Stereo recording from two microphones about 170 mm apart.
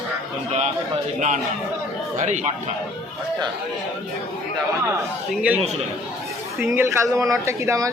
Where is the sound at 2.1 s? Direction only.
45° right (ahead or behind).